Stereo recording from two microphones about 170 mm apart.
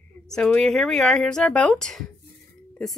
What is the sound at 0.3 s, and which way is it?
Speech, 5° left (ahead or behind).